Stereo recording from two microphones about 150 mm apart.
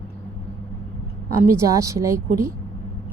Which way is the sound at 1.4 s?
20° right (ahead or behind).